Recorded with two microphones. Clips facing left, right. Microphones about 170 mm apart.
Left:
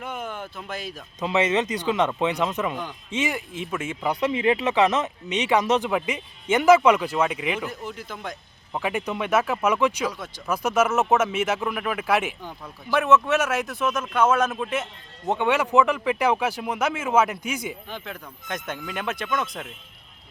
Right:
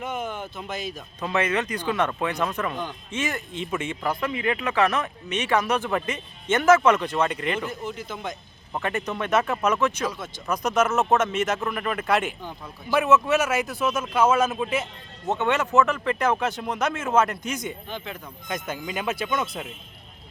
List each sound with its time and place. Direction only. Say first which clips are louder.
0.0 s speech: right 2 dB; 5° right (ahead or behind)
1.2 s speech: left 3 dB; 20° left (ahead or behind); by 3.9 s centre (ahead or behind)
4.0 s speech: left 6 dB; 20° left (ahead or behind); by 14.8 s centre (ahead or behind)
15.3 s speech: left 2 dB; 10° left (ahead or behind); by 19.7 s 5° right (ahead or behind)